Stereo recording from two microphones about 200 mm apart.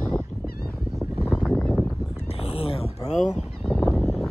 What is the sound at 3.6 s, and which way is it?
Fowl, centre (ahead or behind).